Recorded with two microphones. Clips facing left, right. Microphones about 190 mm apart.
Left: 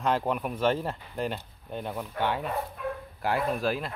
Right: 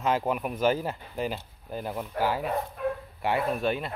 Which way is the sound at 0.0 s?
5° right (ahead or behind).